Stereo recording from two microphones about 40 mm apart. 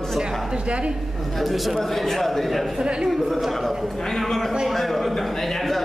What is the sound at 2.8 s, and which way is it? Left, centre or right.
Speech, right.